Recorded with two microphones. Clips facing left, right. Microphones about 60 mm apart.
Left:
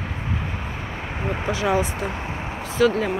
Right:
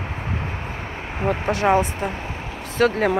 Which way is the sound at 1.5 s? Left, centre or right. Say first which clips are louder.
Right 3 dB; right.